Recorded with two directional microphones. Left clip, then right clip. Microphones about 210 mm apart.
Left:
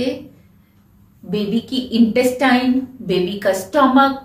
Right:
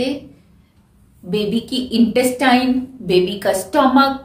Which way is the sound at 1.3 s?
20° right (ahead or behind).